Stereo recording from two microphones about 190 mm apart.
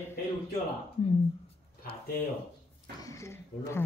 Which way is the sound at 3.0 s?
15° left (ahead or behind).